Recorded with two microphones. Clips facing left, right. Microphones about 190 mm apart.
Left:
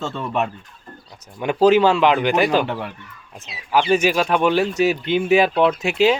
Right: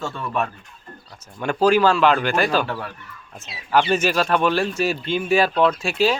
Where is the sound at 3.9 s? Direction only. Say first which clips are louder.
Left 2 dB; 15° left (ahead or behind).